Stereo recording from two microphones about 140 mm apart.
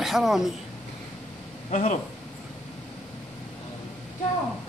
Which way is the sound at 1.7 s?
60° left (ahead or behind).